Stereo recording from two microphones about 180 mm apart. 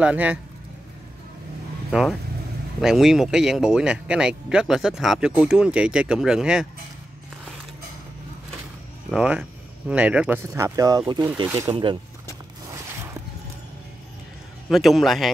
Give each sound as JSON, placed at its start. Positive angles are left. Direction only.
{"t": 0.0, "sound": "speech", "side_deg": -5}
{"t": 1.9, "sound": "speech", "side_deg": 0}
{"t": 9.1, "sound": "speech", "side_deg": -5}
{"t": 11.7, "sound": "speech", "side_deg": -25}
{"t": 12.7, "sound": "a sound", "side_deg": -15}
{"t": 14.7, "sound": "speech", "side_deg": 0}